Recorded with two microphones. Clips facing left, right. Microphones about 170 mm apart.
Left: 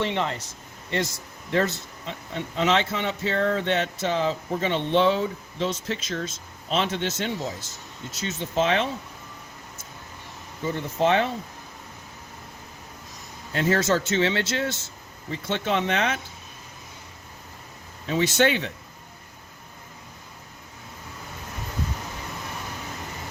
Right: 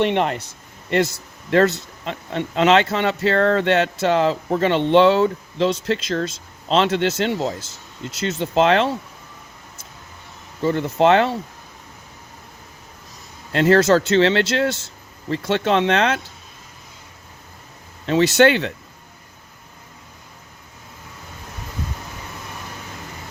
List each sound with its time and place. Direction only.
0.0 s speech: 60° right (ahead or behind)
1.5 s speech: 70° right (ahead or behind)
10.6 s speech: 70° right (ahead or behind)
13.5 s speech: 75° right (ahead or behind)
18.0 s speech: 75° right (ahead or behind)